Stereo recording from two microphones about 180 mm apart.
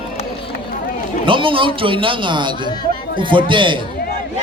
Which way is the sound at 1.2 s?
30° right (ahead or behind).